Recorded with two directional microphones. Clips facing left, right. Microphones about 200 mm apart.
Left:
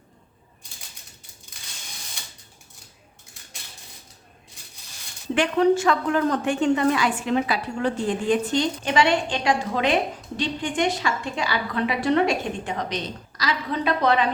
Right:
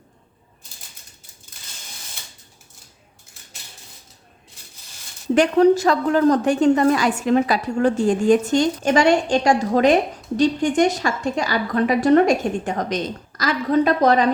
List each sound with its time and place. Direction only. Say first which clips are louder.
5.3 s a woman's voice: right 5 dB; 40° right (ahead or behind)